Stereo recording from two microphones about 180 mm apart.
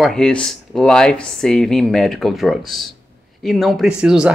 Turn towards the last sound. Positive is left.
turn(degrees=-5)  # may be behind; listen again after turning